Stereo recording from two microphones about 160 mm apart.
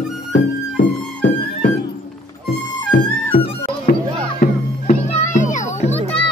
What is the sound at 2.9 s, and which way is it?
Music, 65° left (ahead or behind).